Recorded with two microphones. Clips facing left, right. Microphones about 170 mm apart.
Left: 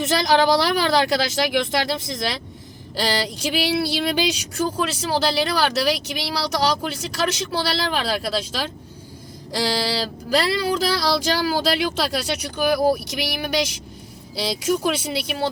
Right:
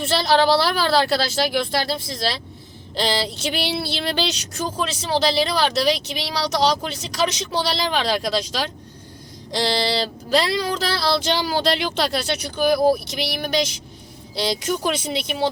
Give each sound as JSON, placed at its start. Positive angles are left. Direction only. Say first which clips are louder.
{"t": 0.2, "sound": "speech", "louder": "right 1 dB", "side_deg": 15}